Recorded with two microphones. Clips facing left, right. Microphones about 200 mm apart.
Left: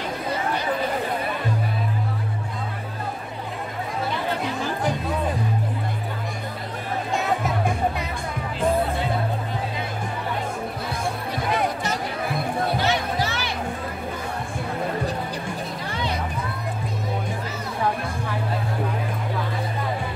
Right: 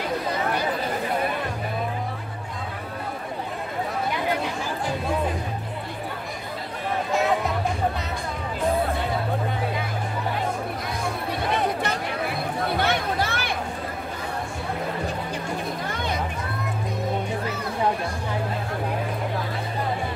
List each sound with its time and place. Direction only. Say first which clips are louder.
12.7 s music: even; 55° right (ahead or behind)